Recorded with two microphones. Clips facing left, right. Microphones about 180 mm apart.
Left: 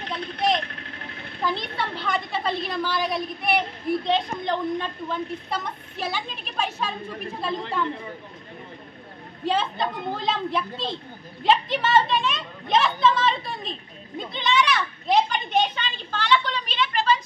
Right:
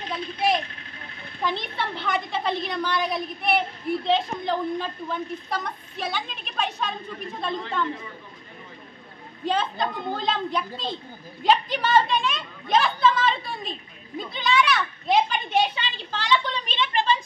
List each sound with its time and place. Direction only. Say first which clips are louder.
1.4 s a woman's voice: left 1 dB; centre (ahead or behind)
9.4 s a woman's voice: left 1 dB; 5° left (ahead or behind); by 17.1 s 20° right (ahead or behind)